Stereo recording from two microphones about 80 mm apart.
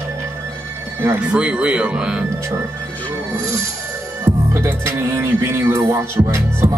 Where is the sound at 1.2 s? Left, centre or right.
Centre.